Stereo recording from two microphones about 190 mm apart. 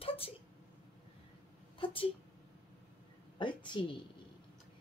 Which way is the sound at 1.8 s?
30° left (ahead or behind).